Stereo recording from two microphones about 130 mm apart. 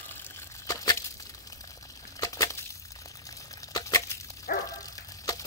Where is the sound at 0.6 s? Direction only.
30° left (ahead or behind).